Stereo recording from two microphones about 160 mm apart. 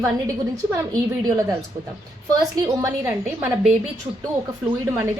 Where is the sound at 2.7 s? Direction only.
20° right (ahead or behind).